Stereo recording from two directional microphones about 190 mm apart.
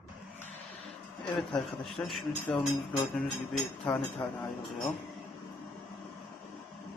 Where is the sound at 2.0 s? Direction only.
10° left (ahead or behind).